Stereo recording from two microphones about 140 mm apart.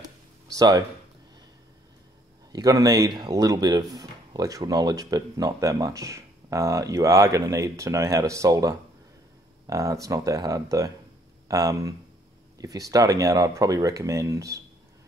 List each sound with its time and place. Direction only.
0.5 s speech: 25° right (ahead or behind)
2.5 s speech: 25° right (ahead or behind)